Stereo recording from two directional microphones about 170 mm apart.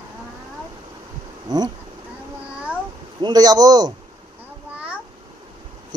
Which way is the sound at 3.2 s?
20° right (ahead or behind).